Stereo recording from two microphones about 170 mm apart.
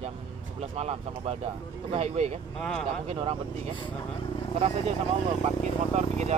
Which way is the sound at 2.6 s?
5° left (ahead or behind).